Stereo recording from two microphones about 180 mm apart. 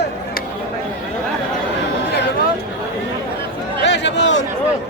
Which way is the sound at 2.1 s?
65° left (ahead or behind).